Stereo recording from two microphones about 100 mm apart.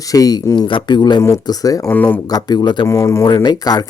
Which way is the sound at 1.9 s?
15° left (ahead or behind).